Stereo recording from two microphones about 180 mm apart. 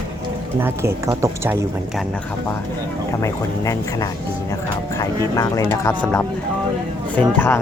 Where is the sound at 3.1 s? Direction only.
15° left (ahead or behind).